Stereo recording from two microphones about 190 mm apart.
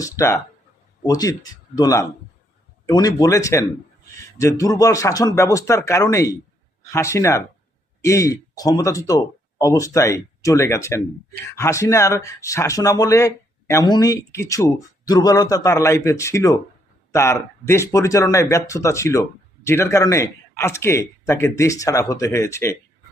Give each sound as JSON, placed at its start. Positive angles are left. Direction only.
{"t": 0.0, "sound": "speech", "side_deg": 15}